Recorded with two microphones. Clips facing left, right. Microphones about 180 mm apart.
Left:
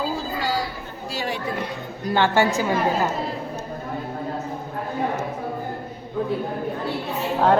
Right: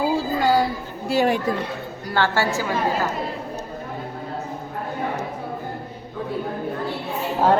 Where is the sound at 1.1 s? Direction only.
55° right (ahead or behind).